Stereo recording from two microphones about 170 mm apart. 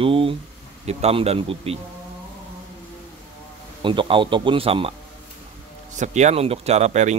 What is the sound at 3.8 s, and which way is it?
Speech, 30° right (ahead or behind).